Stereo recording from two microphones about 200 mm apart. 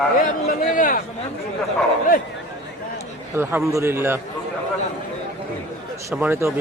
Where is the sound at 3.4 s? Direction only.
15° right (ahead or behind).